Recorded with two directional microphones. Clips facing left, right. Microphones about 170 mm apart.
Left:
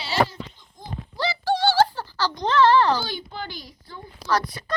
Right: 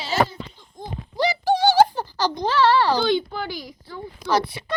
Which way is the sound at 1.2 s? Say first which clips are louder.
Right 3 dB; 15° right (ahead or behind).